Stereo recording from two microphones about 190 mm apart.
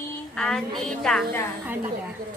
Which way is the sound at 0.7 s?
Centre (ahead or behind).